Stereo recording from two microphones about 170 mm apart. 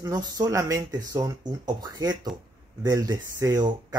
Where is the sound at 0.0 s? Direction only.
20° right (ahead or behind).